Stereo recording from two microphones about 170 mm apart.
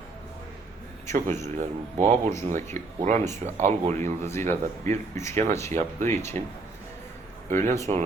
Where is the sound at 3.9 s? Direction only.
15° left (ahead or behind).